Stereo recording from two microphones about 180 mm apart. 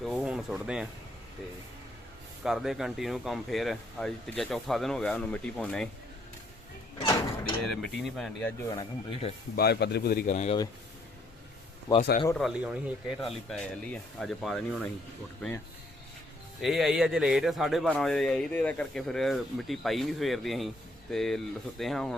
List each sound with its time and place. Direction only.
0.0 s speech: centre (ahead or behind)
2.4 s a man's voice: centre (ahead or behind)
7.6 s a man's voice: centre (ahead or behind)
8.7 s speech: 25° left (ahead or behind)
9.6 s a man's voice: 65° left (ahead or behind)
10.2 s speech: 40° left (ahead or behind)
11.9 s speech: 15° left (ahead or behind)
12.3 s a man's voice: centre (ahead or behind)